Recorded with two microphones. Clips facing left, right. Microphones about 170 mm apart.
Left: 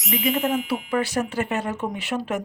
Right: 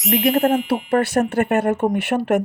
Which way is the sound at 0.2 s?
60° right (ahead or behind).